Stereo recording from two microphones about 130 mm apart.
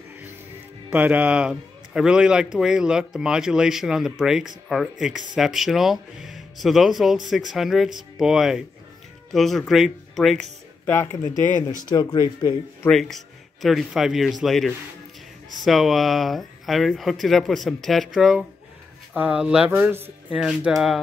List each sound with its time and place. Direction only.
0.8 s a man's voice: 10° right (ahead or behind)
10.9 s speech: 20° left (ahead or behind)
11.9 s speech: 35° left (ahead or behind)
12.9 s a man's voice: centre (ahead or behind)